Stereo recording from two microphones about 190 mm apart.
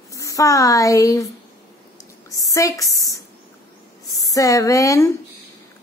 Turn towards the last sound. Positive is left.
turn(degrees=15)  # may be behind; listen again after turning